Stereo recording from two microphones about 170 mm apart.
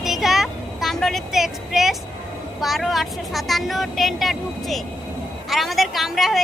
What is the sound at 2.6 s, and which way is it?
Speech, centre (ahead or behind).